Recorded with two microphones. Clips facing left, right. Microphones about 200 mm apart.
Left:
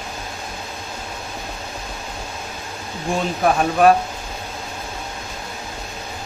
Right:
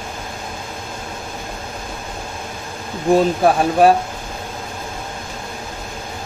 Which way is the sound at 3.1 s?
30° right (ahead or behind).